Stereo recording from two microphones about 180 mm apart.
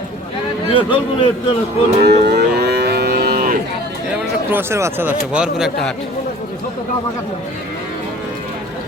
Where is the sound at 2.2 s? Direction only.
65° right (ahead or behind).